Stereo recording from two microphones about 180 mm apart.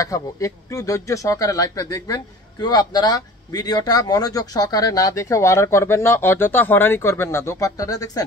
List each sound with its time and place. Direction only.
0.0 s speech: 20° left (ahead or behind)